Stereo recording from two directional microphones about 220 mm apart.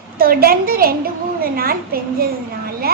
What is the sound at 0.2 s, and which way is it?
A woman's voice, 40° right (ahead or behind).